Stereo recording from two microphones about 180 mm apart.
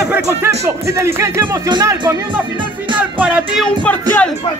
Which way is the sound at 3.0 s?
5° right (ahead or behind).